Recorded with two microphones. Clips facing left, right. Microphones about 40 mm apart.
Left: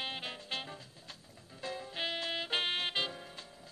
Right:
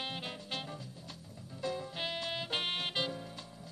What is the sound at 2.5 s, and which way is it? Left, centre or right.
Music, left.